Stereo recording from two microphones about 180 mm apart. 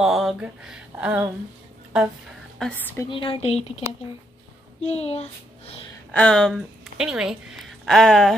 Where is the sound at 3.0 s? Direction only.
30° left (ahead or behind).